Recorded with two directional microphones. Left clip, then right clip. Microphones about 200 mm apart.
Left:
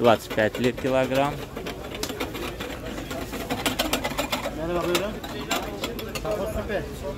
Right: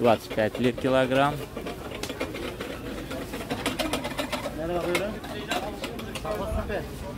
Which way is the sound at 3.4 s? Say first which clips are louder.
Left 3 dB; 60° left (ahead or behind).